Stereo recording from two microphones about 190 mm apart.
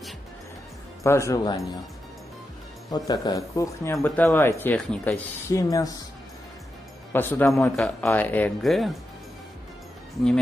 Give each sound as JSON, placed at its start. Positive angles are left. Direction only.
{"t": 1.0, "sound": "speech", "side_deg": 15}
{"t": 2.9, "sound": "speech", "side_deg": 20}
{"t": 7.1, "sound": "speech", "side_deg": 10}